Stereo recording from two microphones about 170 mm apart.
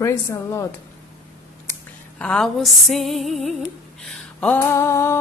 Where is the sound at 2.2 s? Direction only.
5° left (ahead or behind).